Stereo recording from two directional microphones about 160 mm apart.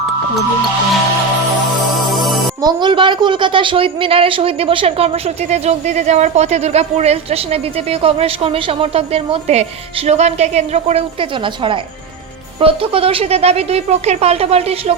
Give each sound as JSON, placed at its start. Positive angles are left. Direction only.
{"t": 2.0, "sound": "music", "side_deg": 0}
{"t": 2.6, "sound": "a woman's voice", "side_deg": -25}